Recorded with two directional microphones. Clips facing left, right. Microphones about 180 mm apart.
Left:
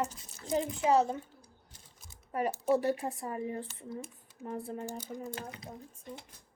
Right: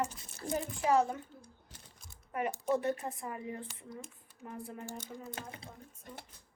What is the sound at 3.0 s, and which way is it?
Speech, 30° left (ahead or behind).